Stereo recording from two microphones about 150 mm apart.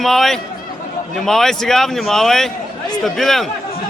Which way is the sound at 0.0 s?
Centre (ahead or behind).